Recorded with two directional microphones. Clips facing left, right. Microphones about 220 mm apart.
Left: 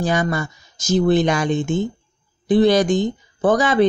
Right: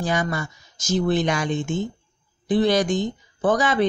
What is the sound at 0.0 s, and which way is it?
Speech, 35° left (ahead or behind).